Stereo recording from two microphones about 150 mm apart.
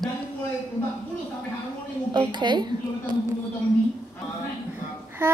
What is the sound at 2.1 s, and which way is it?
A woman's voice, 30° right (ahead or behind).